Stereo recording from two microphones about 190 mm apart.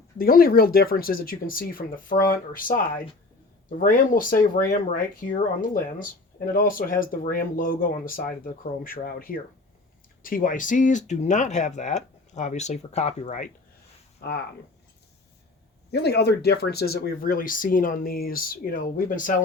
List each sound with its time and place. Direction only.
0.2 s speech: 50° left (ahead or behind)
14.2 s speech: 60° left (ahead or behind)
15.9 s speech: 60° left (ahead or behind)